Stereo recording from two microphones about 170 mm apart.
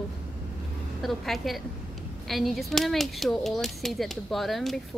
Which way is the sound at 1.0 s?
Centre (ahead or behind).